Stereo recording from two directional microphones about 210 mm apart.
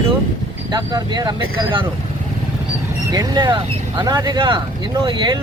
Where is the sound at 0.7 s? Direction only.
20° right (ahead or behind).